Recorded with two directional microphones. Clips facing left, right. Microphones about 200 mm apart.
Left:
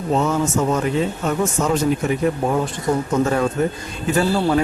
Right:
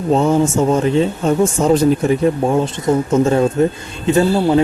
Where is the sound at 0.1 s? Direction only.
30° right (ahead or behind).